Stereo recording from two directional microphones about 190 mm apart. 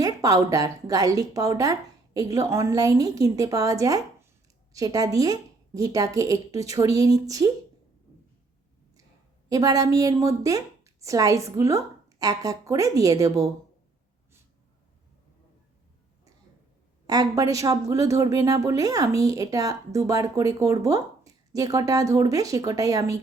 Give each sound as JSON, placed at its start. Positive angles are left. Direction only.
{"t": 0.0, "sound": "a woman's voice", "side_deg": -20}
{"t": 9.5, "sound": "a woman's voice", "side_deg": -20}
{"t": 17.1, "sound": "a woman's voice", "side_deg": -20}